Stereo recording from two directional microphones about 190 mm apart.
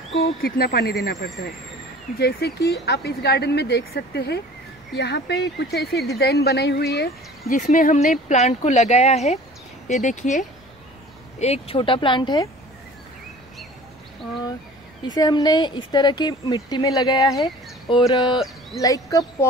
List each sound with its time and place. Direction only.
0.2 s speech: 55° left (ahead or behind)
2.1 s speech: 55° left (ahead or behind)
7.5 s speech: 45° left (ahead or behind); by 12.4 s 20° left (ahead or behind)
15.0 s speech: 20° left (ahead or behind)